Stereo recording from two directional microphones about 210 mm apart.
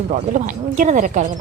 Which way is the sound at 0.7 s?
40° right (ahead or behind).